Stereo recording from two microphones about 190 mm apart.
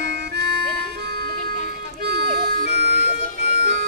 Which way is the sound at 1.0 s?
55° right (ahead or behind).